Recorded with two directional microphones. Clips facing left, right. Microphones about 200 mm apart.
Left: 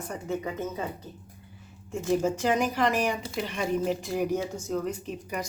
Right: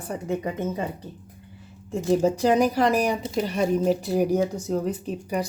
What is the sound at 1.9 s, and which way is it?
Speech, 35° right (ahead or behind).